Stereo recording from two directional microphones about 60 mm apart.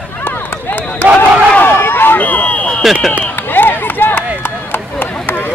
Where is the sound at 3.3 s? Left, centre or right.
Left.